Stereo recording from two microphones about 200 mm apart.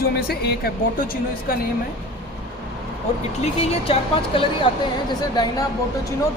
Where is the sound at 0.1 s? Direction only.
50° left (ahead or behind).